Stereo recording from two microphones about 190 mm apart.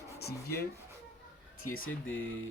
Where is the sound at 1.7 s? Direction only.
90° left.